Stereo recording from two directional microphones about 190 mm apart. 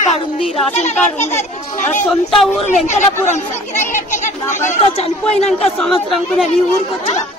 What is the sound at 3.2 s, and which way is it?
Speech, 40° left (ahead or behind).